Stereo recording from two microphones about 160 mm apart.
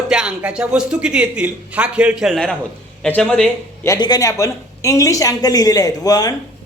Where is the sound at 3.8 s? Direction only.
25° left (ahead or behind).